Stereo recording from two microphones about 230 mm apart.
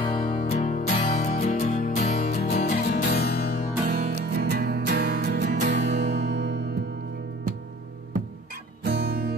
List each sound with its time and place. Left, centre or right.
0.2 s music: left
3.9 s music: right
8.8 s music: right